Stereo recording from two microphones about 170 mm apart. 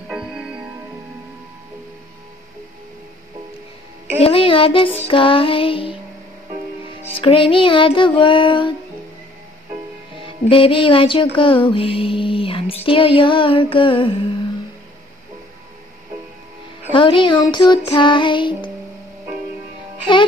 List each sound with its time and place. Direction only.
0.1 s music: 5° right (ahead or behind)
4.2 s speech: 35° left (ahead or behind)
7.2 s music: 30° left (ahead or behind)
10.2 s music: 30° left (ahead or behind)
11.3 s speech: 30° left (ahead or behind)
16.9 s music: 30° left (ahead or behind)